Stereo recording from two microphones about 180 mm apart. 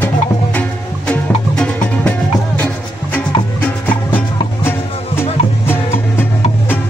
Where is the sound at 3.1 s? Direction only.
10° left (ahead or behind).